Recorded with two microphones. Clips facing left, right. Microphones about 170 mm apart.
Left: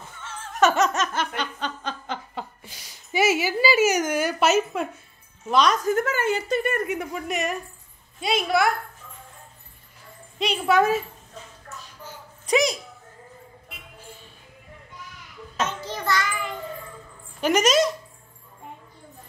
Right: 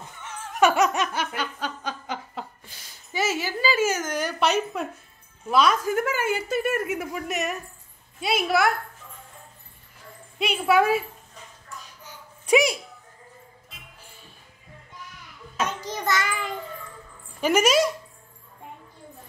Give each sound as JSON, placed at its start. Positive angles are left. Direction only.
{"t": 0.2, "sound": "music", "side_deg": -15}
{"t": 2.6, "sound": "a woman's voice", "side_deg": 10}
{"t": 10.4, "sound": "a child's voice", "side_deg": -5}
{"t": 12.4, "sound": "a sound", "side_deg": -10}
{"t": 15.9, "sound": "child singing", "side_deg": -20}
{"t": 17.4, "sound": "a child's voice", "side_deg": -10}